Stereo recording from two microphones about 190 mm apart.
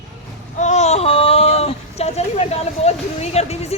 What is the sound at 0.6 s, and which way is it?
Speech, 35° left (ahead or behind).